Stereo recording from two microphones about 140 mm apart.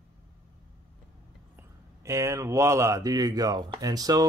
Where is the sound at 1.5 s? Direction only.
20° right (ahead or behind).